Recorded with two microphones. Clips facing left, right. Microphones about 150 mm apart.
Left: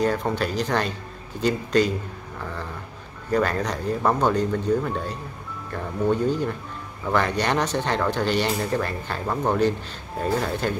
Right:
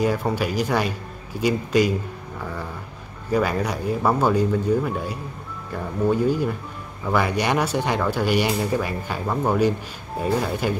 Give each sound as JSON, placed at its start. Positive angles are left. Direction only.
{"t": 0.0, "sound": "speech", "side_deg": -10}
{"t": 2.4, "sound": "a sound", "side_deg": -10}
{"t": 3.3, "sound": "speech", "side_deg": -10}